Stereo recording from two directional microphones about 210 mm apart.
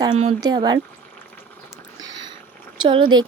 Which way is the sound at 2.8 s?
25° right (ahead or behind).